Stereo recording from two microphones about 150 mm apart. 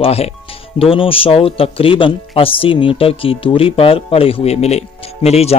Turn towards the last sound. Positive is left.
turn(degrees=45)  # may be behind; listen again after turning